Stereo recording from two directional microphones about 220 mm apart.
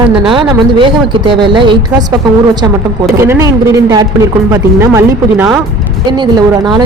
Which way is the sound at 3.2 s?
10° right (ahead or behind).